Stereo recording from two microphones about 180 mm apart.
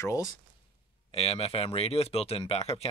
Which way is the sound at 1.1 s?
35° left (ahead or behind).